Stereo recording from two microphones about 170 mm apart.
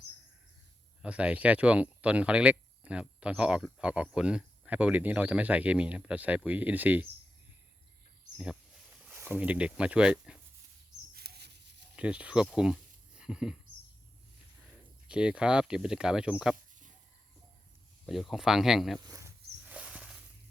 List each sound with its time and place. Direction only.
1.0 s speech: 5° right (ahead or behind)
9.0 s speech: 10° right (ahead or behind)
11.1 s a sound: 65° right (ahead or behind)
11.9 s speech: 5° right (ahead or behind)
15.0 s speech: 5° right (ahead or behind)
18.0 s speech: centre (ahead or behind)
19.0 s speech: 20° right (ahead or behind)
19.6 s a sound: 5° right (ahead or behind)